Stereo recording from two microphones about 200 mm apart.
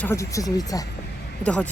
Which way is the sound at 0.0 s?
15° left (ahead or behind).